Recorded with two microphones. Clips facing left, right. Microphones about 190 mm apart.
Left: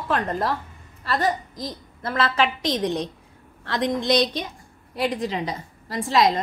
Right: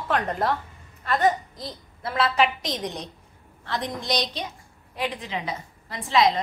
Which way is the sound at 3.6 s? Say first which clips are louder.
Left 5 dB; 90° left.